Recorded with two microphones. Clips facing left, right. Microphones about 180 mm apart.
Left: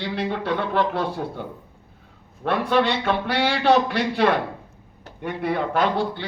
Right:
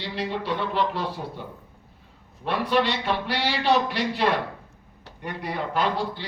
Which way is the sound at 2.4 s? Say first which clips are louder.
Left 3 dB; 50° left (ahead or behind).